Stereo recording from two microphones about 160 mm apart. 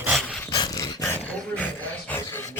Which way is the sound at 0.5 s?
25° left (ahead or behind).